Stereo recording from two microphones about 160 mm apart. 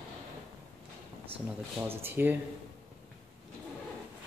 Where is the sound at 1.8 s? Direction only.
15° right (ahead or behind).